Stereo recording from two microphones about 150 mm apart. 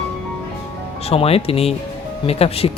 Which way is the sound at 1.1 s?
40° left (ahead or behind).